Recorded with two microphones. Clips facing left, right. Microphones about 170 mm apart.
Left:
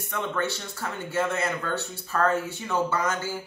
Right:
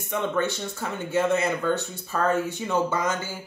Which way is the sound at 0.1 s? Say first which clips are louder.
Right 4 dB; 20° right (ahead or behind).